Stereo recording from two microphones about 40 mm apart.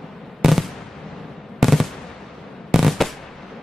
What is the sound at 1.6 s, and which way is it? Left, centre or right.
Machine gun, centre.